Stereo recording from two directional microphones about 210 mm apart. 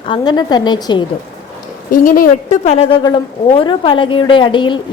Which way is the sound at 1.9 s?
40° left (ahead or behind).